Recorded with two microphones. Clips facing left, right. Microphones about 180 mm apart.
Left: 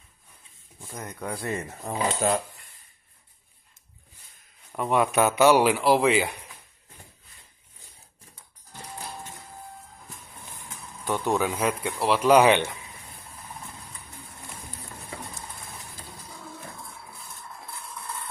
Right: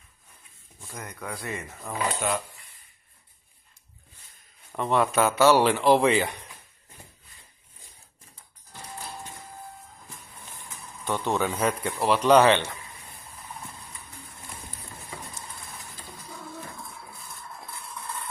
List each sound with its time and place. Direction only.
0.7 s speech: 20° left (ahead or behind); by 2.4 s 35° left (ahead or behind)
4.7 s speech: 10° left (ahead or behind)
11.2 s speech: 5° left (ahead or behind)